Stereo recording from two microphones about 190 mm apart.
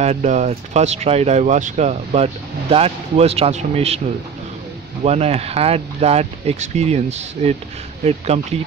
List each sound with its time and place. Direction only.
0.0 s speech: 35° right (ahead or behind)
5.0 s speech: 35° right (ahead or behind)